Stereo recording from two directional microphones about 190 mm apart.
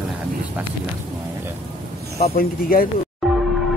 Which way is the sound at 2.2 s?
50° left (ahead or behind).